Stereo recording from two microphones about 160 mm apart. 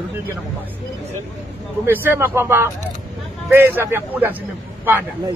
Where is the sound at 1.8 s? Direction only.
15° right (ahead or behind).